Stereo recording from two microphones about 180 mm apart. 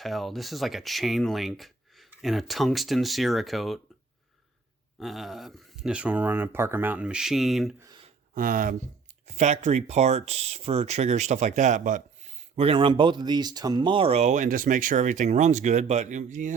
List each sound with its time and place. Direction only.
0.0 s speech: centre (ahead or behind)
4.9 s speech: centre (ahead or behind)
7.8 s a sound: 20° right (ahead or behind)
8.4 s speech: 50° right (ahead or behind)